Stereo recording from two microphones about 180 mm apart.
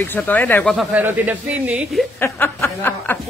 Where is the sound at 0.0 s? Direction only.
10° left (ahead or behind).